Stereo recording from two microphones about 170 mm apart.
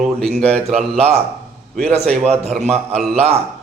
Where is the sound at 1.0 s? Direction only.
40° right (ahead or behind).